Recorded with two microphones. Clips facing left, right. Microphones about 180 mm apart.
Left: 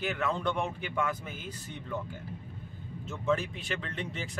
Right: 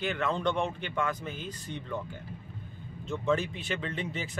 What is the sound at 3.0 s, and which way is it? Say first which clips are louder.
Speech: right 2 dB; 5° left (ahead or behind).